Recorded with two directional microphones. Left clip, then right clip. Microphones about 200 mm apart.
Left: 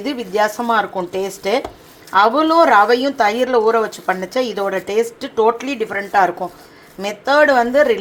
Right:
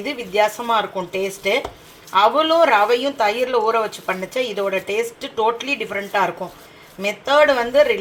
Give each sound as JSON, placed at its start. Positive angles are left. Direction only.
{"t": 0.3, "sound": "speech", "side_deg": 40}